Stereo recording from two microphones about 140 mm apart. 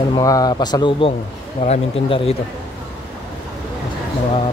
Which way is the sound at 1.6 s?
50° left (ahead or behind).